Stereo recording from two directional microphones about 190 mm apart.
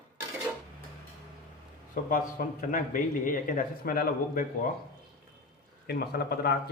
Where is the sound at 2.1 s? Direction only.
45° left (ahead or behind).